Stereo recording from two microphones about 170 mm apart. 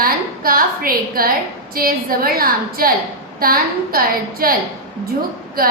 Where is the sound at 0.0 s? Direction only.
60° right (ahead or behind).